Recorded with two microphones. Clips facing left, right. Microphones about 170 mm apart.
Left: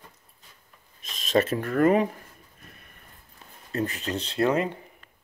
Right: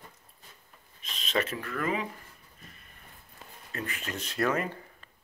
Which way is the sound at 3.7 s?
35° left (ahead or behind).